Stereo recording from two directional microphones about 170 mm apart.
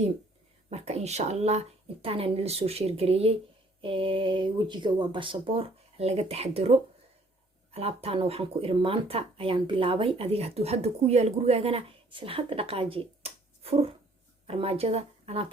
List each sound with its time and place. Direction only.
0.7 s speech: 40° right (ahead or behind)